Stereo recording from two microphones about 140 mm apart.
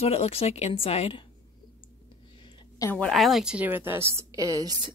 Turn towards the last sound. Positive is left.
turn(degrees=-25)  # may be behind; listen again after turning